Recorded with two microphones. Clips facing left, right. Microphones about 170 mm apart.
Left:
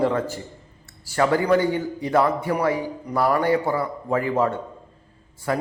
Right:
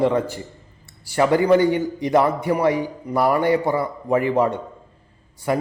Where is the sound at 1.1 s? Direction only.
20° right (ahead or behind).